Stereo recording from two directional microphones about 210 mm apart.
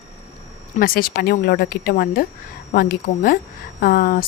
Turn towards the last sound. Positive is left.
turn(degrees=45)  # may be behind; listen again after turning